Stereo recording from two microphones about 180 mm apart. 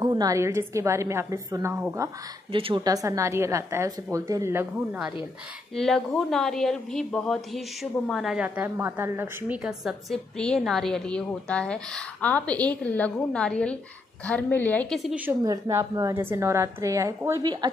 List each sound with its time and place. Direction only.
0.0 s a woman's voice: 20° right (ahead or behind)
2.5 s a woman's voice: 30° right (ahead or behind)
5.8 s a woman's voice: centre (ahead or behind)
15.1 s a woman's voice: 15° right (ahead or behind)